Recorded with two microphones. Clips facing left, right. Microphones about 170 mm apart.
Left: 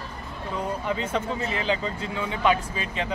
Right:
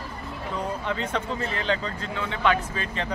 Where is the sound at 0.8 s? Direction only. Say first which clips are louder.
Left 1 dB; 10° left (ahead or behind).